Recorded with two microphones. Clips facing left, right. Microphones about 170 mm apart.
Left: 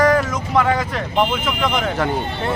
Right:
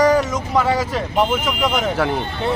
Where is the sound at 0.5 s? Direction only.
5° right (ahead or behind).